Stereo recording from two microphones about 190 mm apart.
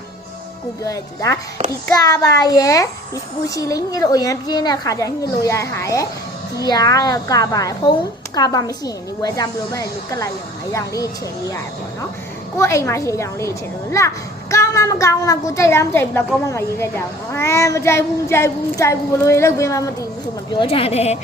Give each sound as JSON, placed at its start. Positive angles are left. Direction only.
{"t": 0.9, "sound": "a woman's voice", "side_deg": 20}
{"t": 20.5, "sound": "a woman's voice", "side_deg": 30}